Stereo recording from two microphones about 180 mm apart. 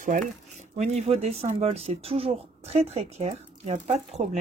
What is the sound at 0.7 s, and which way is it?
Speech, 35° right (ahead or behind).